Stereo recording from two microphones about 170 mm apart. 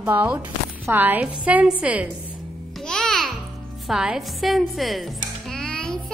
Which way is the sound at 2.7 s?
Centre (ahead or behind).